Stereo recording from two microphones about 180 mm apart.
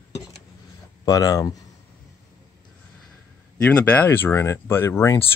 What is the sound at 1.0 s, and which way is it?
Speech, 20° left (ahead or behind).